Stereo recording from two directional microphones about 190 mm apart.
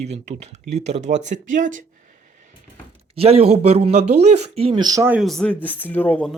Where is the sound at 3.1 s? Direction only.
30° right (ahead or behind); by 5.2 s 10° right (ahead or behind).